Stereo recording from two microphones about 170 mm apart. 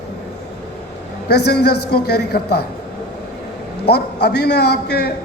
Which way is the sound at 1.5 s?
70° left (ahead or behind).